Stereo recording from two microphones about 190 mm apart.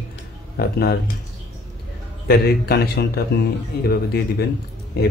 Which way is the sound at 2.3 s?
55° left (ahead or behind).